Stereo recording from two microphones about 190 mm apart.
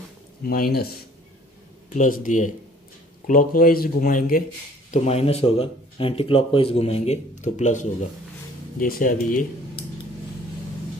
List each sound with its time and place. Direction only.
0.4 s speech: 50° left (ahead or behind)
2.0 s speech: 45° left (ahead or behind)
4.9 s speech: 35° left (ahead or behind)